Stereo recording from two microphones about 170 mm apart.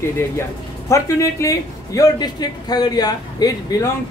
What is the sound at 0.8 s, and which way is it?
A man's voice, 15° left (ahead or behind).